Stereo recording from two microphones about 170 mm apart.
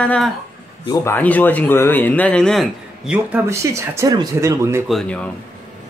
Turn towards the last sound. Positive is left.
turn(degrees=5)  # may be behind; listen again after turning